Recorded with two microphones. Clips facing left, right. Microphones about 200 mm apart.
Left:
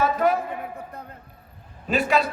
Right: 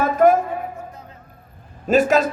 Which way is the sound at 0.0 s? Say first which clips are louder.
Right 6 dB; 45° right (ahead or behind).